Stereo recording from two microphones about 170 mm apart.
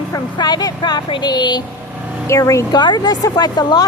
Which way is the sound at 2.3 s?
15° left (ahead or behind).